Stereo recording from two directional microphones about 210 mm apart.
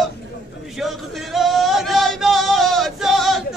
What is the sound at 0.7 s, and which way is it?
Male singing, centre (ahead or behind).